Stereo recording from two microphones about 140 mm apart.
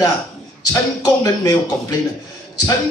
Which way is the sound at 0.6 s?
25° left (ahead or behind).